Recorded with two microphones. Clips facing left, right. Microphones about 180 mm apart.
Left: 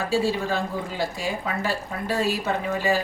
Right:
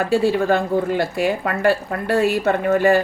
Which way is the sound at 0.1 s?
60° right (ahead or behind).